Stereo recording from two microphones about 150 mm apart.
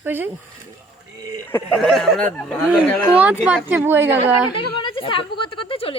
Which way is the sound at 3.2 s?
10° right (ahead or behind).